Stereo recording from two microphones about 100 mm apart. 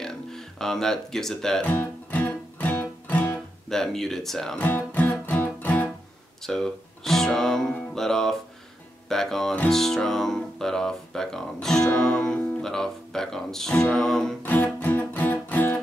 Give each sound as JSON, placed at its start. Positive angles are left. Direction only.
{"t": 0.0, "sound": "speech", "side_deg": 5}
{"t": 1.7, "sound": "music", "side_deg": 20}
{"t": 3.6, "sound": "speech", "side_deg": 5}
{"t": 4.6, "sound": "music", "side_deg": 15}
{"t": 6.4, "sound": "speech", "side_deg": 5}
{"t": 14.4, "sound": "music", "side_deg": 20}